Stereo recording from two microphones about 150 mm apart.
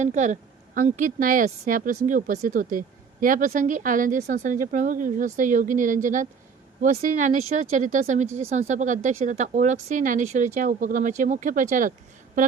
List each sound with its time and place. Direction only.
0.0 s speech: 50° right (ahead or behind)